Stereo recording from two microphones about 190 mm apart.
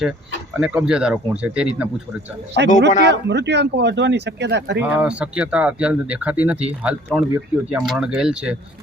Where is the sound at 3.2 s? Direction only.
65° right (ahead or behind).